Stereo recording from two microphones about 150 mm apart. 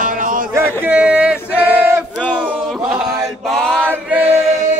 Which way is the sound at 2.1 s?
5° left (ahead or behind).